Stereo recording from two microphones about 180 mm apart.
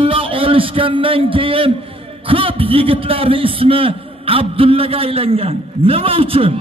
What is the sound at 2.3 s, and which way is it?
A man's voice, 30° right (ahead or behind).